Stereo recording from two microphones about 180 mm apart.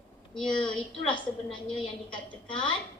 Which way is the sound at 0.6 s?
25° left (ahead or behind).